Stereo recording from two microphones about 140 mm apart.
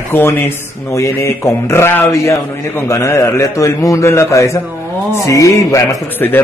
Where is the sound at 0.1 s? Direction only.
15° left (ahead or behind).